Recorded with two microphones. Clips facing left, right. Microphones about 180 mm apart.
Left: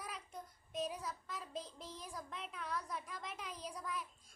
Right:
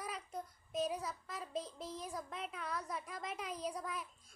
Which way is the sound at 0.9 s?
40° right (ahead or behind).